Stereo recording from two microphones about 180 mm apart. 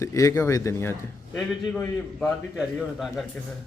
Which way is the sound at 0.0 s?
15° left (ahead or behind).